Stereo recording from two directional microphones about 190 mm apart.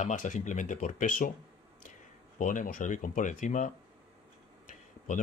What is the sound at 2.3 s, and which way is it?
Speech, 45° left (ahead or behind).